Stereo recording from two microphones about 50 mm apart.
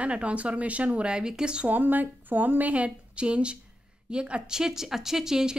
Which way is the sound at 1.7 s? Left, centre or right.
Right.